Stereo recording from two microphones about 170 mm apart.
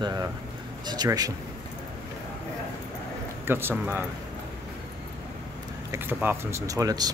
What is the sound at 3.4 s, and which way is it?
Speech, 15° right (ahead or behind).